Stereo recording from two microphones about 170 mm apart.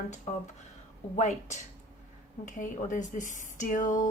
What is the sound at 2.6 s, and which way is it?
Speech, 50° left (ahead or behind).